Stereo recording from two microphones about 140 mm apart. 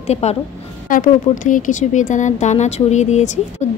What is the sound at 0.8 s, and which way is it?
A woman's voice, 70° left (ahead or behind).